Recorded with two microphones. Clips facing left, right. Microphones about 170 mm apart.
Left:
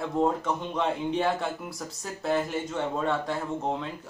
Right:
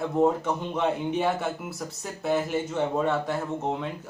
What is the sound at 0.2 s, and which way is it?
Speech, 20° right (ahead or behind).